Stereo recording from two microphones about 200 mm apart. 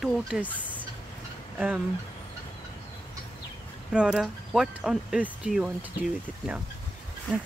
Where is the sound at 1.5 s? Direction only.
5° right (ahead or behind).